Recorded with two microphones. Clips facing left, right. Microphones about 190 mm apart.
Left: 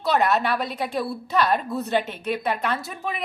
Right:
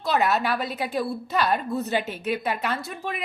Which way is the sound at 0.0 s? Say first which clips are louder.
Left 2 dB; centre (ahead or behind).